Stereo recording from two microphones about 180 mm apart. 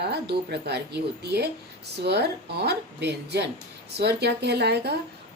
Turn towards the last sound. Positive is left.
turn(degrees=-65)  # may be behind; listen again after turning